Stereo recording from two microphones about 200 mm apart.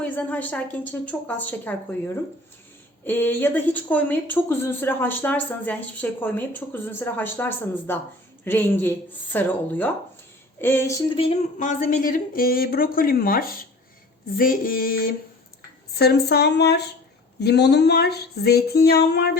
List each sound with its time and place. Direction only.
0.0 s speech: 10° left (ahead or behind)
11.2 s a woman's voice: 40° left (ahead or behind)
16.0 s a sound: 55° left (ahead or behind)